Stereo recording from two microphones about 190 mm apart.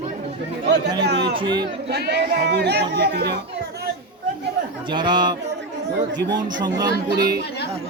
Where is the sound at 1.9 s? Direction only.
60° right (ahead or behind).